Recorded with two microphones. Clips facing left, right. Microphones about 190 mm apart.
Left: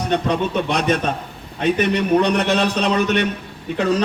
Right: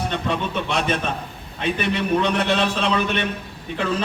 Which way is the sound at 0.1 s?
45° left (ahead or behind).